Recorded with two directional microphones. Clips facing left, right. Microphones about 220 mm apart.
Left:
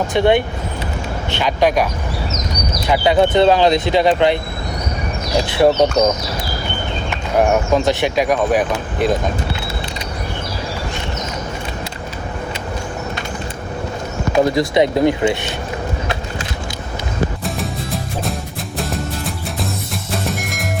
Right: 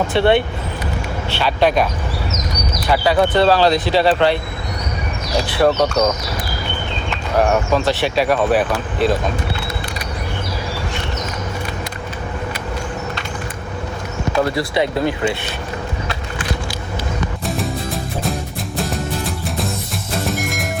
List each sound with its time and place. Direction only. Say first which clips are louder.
0.2 s speech: left 1 dB; 15° left (ahead or behind)
5.5 s speech: left 2 dB; 20° left (ahead or behind)
7.1 s speech: left 1 dB; 15° left (ahead or behind)
14.3 s speech: left 4 dB; 20° left (ahead or behind)
17.4 s music: right 1 dB; centre (ahead or behind)